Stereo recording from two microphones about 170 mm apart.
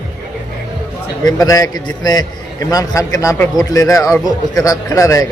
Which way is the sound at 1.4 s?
20° left (ahead or behind).